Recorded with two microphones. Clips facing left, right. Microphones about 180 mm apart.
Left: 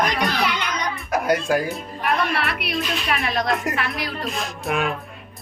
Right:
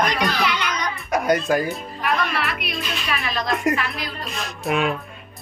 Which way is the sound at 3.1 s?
Centre (ahead or behind).